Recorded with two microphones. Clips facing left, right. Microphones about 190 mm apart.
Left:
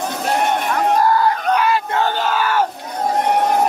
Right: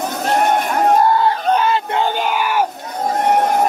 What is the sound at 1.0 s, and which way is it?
Battle cry, 25° right (ahead or behind).